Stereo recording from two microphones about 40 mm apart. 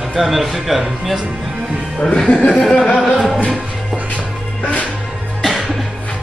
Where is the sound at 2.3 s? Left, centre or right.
Left.